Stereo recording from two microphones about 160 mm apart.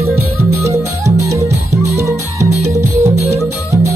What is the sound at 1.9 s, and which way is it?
Music, 15° right (ahead or behind).